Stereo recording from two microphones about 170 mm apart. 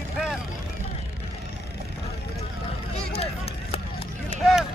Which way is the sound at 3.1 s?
35° left (ahead or behind).